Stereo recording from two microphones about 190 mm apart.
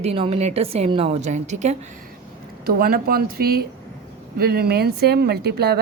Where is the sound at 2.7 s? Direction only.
50° right (ahead or behind).